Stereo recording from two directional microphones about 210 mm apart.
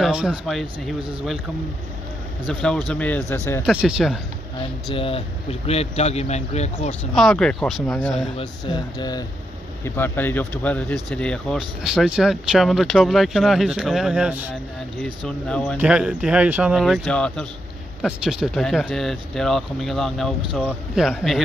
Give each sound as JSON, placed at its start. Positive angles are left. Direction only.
{"t": 0.0, "sound": "speech", "side_deg": -5}
{"t": 2.4, "sound": "speech", "side_deg": 5}
{"t": 3.6, "sound": "speech", "side_deg": -5}
{"t": 4.9, "sound": "speech", "side_deg": 25}
{"t": 6.9, "sound": "speech", "side_deg": 5}
{"t": 8.4, "sound": "speech", "side_deg": 20}
{"t": 15.0, "sound": "speech", "side_deg": 5}